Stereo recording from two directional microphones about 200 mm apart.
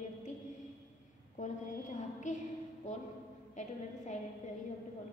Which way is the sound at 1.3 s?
40° left (ahead or behind).